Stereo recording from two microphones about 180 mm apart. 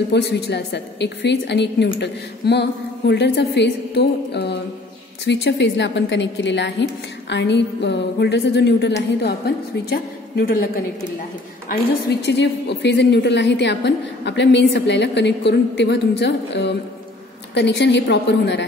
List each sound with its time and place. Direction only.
0.1 s a woman's voice: 70° left (ahead or behind)
9.8 s a woman's voice: 55° left (ahead or behind)
12.3 s a woman's voice: 75° left (ahead or behind)